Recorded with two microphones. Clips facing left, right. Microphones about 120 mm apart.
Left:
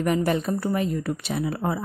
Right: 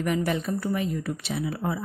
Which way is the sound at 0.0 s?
45° left (ahead or behind).